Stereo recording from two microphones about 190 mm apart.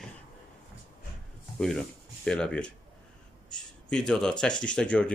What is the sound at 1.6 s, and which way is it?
A man's voice, 5° left (ahead or behind).